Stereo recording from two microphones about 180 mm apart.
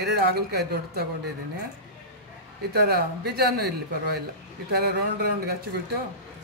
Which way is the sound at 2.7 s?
60° right (ahead or behind).